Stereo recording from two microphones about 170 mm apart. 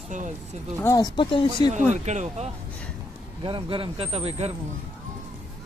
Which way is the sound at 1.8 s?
45° right (ahead or behind).